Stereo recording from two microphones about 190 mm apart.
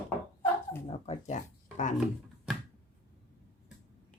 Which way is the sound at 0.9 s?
35° left (ahead or behind).